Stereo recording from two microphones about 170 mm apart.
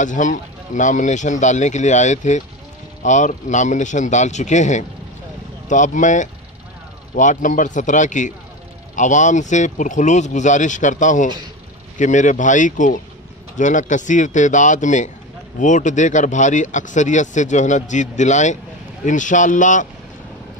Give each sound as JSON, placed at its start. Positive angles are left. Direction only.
{"t": 0.0, "sound": "speech", "side_deg": 45}